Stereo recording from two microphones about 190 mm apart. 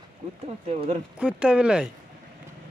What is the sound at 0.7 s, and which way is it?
Speech, 35° right (ahead or behind).